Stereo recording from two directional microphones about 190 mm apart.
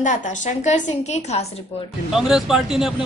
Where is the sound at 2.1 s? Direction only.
Centre (ahead or behind).